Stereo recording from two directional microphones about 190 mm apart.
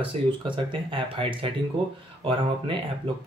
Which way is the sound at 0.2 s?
35° right (ahead or behind).